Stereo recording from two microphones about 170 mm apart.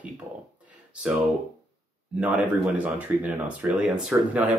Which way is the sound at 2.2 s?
10° right (ahead or behind).